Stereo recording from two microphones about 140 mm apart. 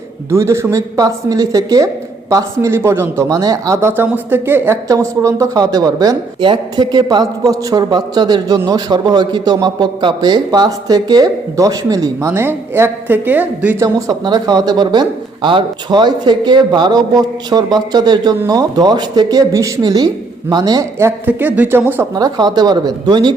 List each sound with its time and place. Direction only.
0.3 s speech: 20° right (ahead or behind)
13.8 s speech: 30° right (ahead or behind)
21.2 s speech: 10° right (ahead or behind)
22.1 s speech: 30° right (ahead or behind)